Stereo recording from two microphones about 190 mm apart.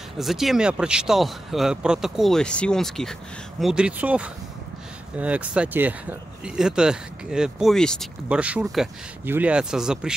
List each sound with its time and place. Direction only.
0.2 s speech: centre (ahead or behind)